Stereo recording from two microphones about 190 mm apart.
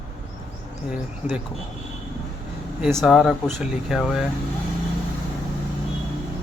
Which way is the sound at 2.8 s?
Centre (ahead or behind).